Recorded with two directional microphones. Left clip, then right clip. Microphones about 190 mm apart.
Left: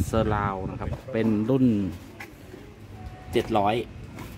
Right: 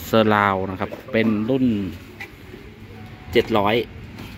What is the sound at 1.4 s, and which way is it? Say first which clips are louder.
Speech: right 2 dB; 30° left (ahead or behind).